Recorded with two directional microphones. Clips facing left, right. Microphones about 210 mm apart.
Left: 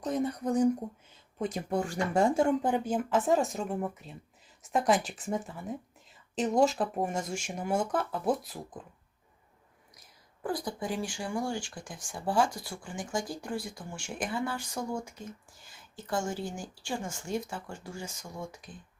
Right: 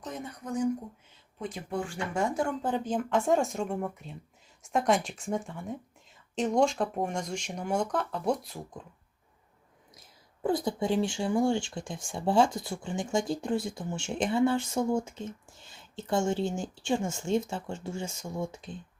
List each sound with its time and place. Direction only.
0.0 s speech: 35° left (ahead or behind); by 8.8 s centre (ahead or behind)
10.4 s speech: 25° right (ahead or behind)